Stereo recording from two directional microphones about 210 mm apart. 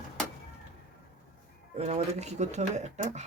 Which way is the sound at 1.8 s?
30° right (ahead or behind).